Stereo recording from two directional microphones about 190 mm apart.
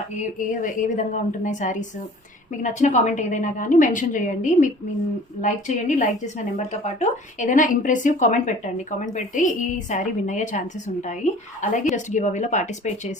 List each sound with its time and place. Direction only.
0.3 s a woman's voice: 45° left (ahead or behind)